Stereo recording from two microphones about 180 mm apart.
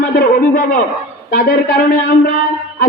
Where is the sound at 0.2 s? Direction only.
55° left (ahead or behind).